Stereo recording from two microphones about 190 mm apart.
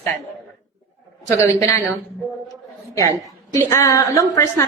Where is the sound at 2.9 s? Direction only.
15° left (ahead or behind).